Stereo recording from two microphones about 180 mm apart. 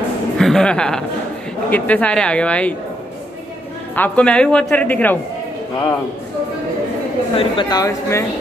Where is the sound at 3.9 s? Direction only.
10° left (ahead or behind).